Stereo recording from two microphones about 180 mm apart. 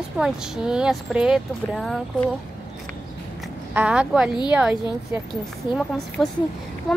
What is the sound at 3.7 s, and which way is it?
Speech, 5° right (ahead or behind).